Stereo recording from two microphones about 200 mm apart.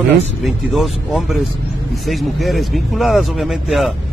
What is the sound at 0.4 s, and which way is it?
Speech, centre (ahead or behind).